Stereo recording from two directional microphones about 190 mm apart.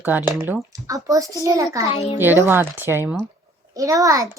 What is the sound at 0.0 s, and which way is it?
A child's voice, 10° right (ahead or behind).